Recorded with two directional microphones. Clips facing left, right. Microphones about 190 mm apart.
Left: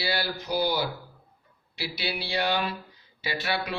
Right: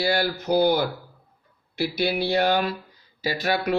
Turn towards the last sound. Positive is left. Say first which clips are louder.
# right 6 dB
turn(degrees=-45)  # may be behind; listen again after turning